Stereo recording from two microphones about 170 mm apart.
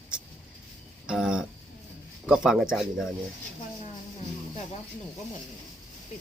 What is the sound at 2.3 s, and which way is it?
Speech, 5° right (ahead or behind).